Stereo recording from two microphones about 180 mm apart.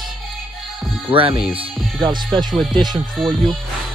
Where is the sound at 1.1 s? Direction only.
30° right (ahead or behind).